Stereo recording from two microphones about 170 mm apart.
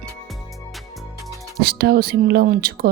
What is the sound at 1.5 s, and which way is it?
Speech, 65° right (ahead or behind).